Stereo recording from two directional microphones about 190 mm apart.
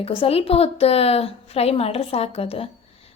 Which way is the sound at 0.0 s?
30° left (ahead or behind).